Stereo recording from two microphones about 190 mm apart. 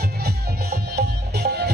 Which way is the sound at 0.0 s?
55° right (ahead or behind).